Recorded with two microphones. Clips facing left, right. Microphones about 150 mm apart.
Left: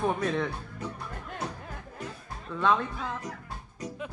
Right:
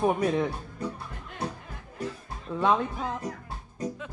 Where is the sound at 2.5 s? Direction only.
20° right (ahead or behind).